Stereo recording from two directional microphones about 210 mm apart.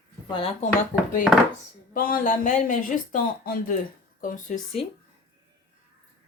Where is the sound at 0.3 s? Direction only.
25° left (ahead or behind).